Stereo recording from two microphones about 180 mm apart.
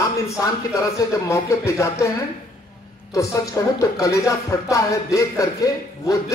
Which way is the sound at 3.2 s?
20° left (ahead or behind).